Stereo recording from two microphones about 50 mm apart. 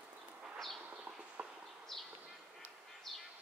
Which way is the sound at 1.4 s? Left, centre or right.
Right.